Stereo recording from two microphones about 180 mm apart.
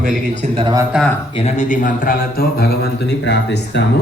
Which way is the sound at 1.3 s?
40° left (ahead or behind).